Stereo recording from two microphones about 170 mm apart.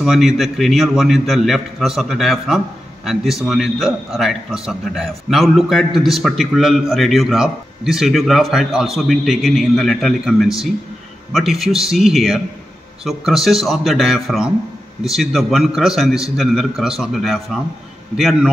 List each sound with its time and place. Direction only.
0.0 s a man's voice: centre (ahead or behind)